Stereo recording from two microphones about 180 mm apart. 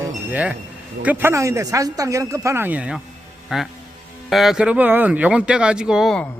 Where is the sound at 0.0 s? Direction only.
10° right (ahead or behind).